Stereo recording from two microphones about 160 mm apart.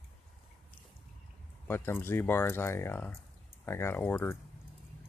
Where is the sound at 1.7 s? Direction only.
15° left (ahead or behind).